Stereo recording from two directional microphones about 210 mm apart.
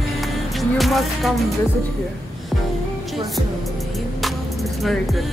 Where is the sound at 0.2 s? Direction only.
Centre (ahead or behind).